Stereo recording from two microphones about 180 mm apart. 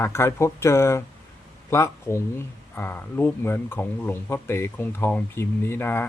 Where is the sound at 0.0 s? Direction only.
15° left (ahead or behind).